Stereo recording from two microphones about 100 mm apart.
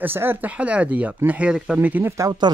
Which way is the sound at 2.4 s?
50° right (ahead or behind).